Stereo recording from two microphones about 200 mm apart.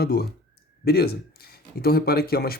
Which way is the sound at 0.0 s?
50° left (ahead or behind).